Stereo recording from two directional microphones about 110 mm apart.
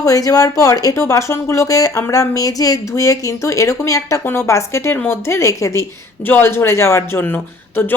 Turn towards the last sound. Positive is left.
turn(degrees=15)  # may be behind; listen again after turning